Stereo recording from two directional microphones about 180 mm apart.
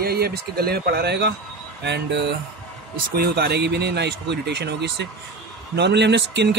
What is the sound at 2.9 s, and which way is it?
Speech, 60° right (ahead or behind).